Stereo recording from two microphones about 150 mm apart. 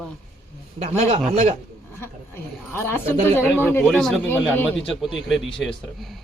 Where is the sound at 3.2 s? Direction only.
15° left (ahead or behind).